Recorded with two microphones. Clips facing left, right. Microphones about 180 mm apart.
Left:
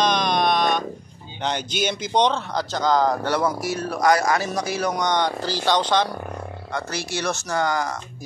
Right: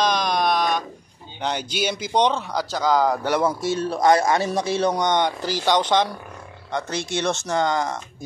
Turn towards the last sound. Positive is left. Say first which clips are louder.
# right 1 dB
turn(degrees=-20)  # may be behind; listen again after turning